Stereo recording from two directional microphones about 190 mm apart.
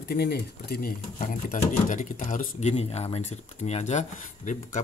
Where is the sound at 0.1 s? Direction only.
55° left (ahead or behind).